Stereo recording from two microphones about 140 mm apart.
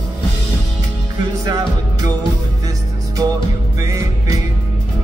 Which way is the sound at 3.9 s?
25° right (ahead or behind).